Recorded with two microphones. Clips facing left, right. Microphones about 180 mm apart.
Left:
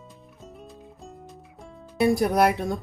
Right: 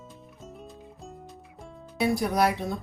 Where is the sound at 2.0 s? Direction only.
55° left (ahead or behind).